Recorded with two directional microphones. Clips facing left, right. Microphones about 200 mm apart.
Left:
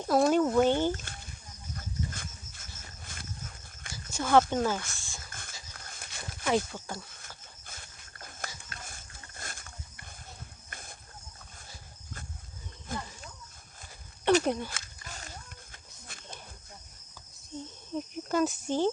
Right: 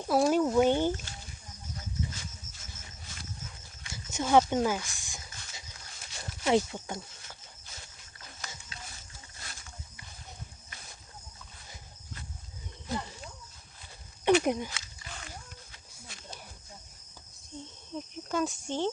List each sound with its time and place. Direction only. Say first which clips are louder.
0.0 s speech: left 1 dB; 5° right (ahead or behind)
2.0 s dog: left 1 dB; 55° left (ahead or behind)
3.9 s speech: even; 20° right (ahead or behind)
5.3 s dog: left 2 dB; 50° left (ahead or behind)
5.7 s walk: left 1 dB; 50° left (ahead or behind)
6.7 s speech: right 1 dB; 20° right (ahead or behind)
7.7 s a sound: left 1 dB; 50° left (ahead or behind)
8.7 s livestock: left 1 dB; 50° left (ahead or behind)
10.7 s a sound: left 3 dB; 50° left (ahead or behind)
12.9 s wild animals: right 3 dB; 50° left (ahead or behind)
14.4 s speech: right 1 dB; 15° right (ahead or behind)
14.7 s a sound: even; 50° left (ahead or behind)
17.5 s a sound: left 3 dB; 5° left (ahead or behind)
17.9 s cricket: left 3 dB; centre (ahead or behind)